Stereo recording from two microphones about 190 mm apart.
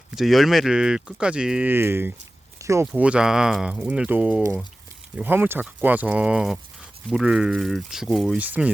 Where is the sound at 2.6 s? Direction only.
15° right (ahead or behind).